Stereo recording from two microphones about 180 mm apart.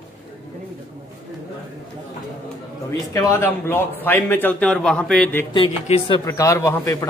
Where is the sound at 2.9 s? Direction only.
15° left (ahead or behind).